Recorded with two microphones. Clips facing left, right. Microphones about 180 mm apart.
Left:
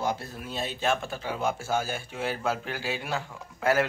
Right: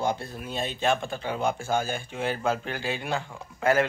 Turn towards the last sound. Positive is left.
turn(degrees=5)  # may be behind; listen again after turning